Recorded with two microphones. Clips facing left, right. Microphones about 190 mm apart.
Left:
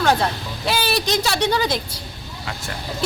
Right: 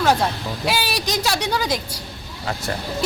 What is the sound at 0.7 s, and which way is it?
A woman's voice, 10° right (ahead or behind).